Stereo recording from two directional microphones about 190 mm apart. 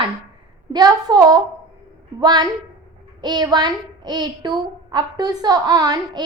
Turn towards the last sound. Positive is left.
turn(degrees=-20)  # may be behind; listen again after turning